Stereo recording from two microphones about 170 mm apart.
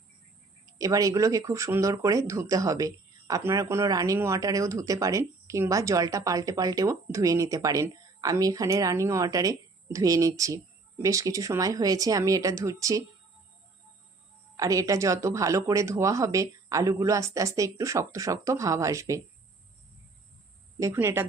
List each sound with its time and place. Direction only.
0.6 s speech: 20° right (ahead or behind)
14.5 s speech: 20° right (ahead or behind)
20.7 s speech: 15° right (ahead or behind)